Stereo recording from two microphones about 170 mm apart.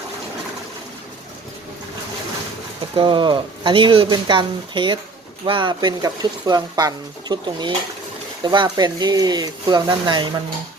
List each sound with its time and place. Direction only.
2.9 s speech: 30° right (ahead or behind)